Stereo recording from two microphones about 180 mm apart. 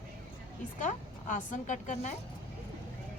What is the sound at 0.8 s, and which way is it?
Speech, 45° left (ahead or behind).